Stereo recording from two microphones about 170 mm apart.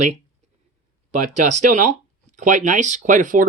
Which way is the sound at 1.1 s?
45° right (ahead or behind).